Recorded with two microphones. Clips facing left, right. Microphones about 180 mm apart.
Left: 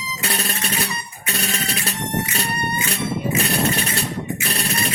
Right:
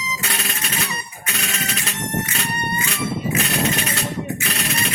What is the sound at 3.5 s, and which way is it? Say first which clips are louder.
Music: left 1 dB; 35° left (ahead or behind).